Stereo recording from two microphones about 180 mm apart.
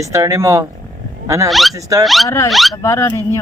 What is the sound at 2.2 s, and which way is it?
Speech, 15° left (ahead or behind).